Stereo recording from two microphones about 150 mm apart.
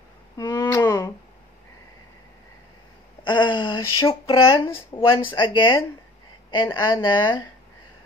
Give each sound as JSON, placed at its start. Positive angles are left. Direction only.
{"t": 0.4, "sound": "a sound", "side_deg": 20}
{"t": 3.3, "sound": "speech", "side_deg": 30}
{"t": 4.6, "sound": "speech", "side_deg": 15}
{"t": 5.2, "sound": "speech", "side_deg": 30}